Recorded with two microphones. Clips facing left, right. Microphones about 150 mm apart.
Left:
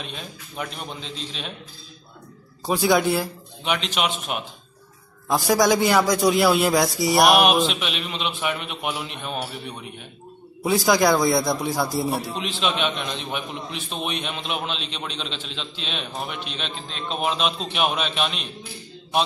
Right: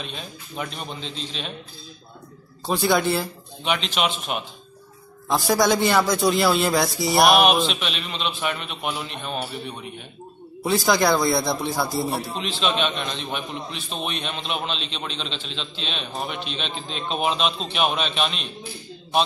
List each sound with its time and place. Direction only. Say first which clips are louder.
0.0 s a man's voice: even; 5° left (ahead or behind)
2.6 s a man's voice: left 1 dB; 10° left (ahead or behind)
11.4 s a man's voice: left 1 dB; 10° left (ahead or behind)